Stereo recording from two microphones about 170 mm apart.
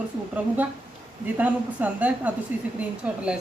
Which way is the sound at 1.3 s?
10° right (ahead or behind).